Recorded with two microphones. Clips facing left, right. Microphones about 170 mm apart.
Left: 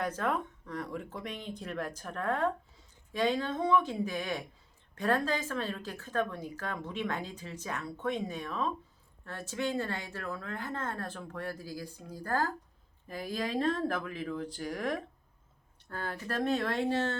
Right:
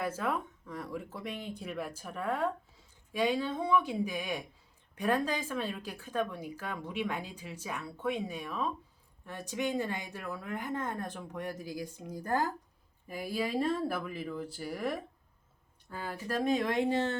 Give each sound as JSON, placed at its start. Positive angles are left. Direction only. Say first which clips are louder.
{"t": 0.0, "sound": "speech", "louder": "left 1 dB", "side_deg": -5}